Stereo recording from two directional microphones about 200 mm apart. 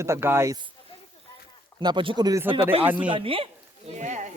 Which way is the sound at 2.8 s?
10° right (ahead or behind).